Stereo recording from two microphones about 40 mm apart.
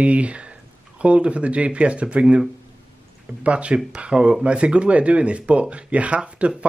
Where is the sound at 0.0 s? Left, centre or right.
Right.